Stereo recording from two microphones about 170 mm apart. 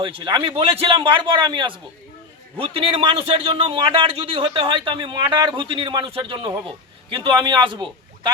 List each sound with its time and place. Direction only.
0.0 s a man's voice: 30° right (ahead or behind)